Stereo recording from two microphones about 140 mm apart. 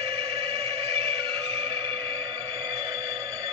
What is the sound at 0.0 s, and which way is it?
Music, 45° right (ahead or behind).